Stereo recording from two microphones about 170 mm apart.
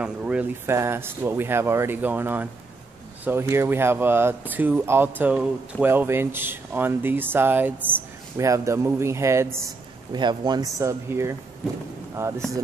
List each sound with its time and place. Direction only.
0.0 s speech: 5° right (ahead or behind)